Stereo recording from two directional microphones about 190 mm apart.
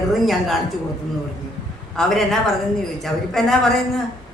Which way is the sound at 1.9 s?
Centre (ahead or behind).